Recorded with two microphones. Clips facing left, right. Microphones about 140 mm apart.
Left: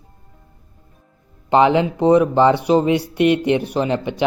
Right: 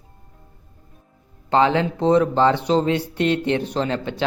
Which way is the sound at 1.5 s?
15° left (ahead or behind).